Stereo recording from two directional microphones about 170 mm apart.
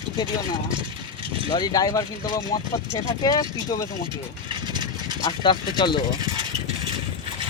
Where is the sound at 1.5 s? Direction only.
20° left (ahead or behind).